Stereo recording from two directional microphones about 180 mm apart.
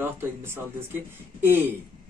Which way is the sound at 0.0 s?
15° right (ahead or behind).